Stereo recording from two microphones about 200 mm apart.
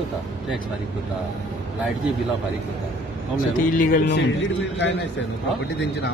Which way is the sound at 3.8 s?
45° left (ahead or behind).